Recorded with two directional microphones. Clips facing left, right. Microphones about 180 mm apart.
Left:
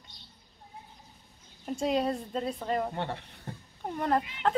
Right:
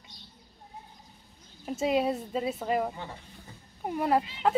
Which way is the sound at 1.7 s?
5° right (ahead or behind).